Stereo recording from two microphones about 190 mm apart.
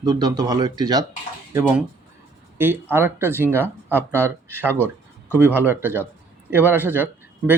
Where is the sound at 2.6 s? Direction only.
10° right (ahead or behind).